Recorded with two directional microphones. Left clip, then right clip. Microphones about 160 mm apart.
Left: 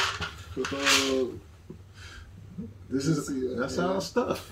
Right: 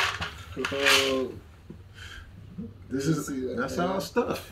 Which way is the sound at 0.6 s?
10° left (ahead or behind).